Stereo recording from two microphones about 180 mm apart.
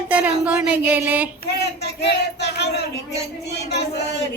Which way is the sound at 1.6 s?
70° left (ahead or behind).